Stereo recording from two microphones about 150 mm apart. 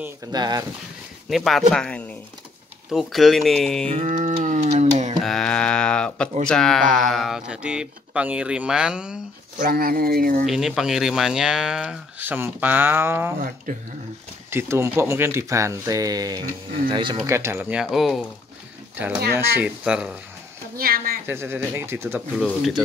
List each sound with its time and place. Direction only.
0.3 s speech: 25° right (ahead or behind)
1.3 s speech: centre (ahead or behind)
3.9 s a sound: 55° right (ahead or behind)
5.2 s mantra: 5° left (ahead or behind)
6.4 s speech: 5° left (ahead or behind)
9.6 s speech: 75° right (ahead or behind)
10.4 s speech: centre (ahead or behind)
14.5 s speech: 15° right (ahead or behind)
17.2 s speech: 15° right (ahead or behind); by 18.2 s centre (ahead or behind)
19.3 s speech: 10° right (ahead or behind)
20.7 s speech: 75° right (ahead or behind)
21.3 s speech: 15° right (ahead or behind)